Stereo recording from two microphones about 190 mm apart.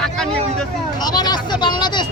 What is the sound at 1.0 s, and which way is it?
Speech, 20° left (ahead or behind).